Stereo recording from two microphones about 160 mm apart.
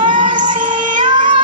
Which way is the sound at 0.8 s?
55° right (ahead or behind).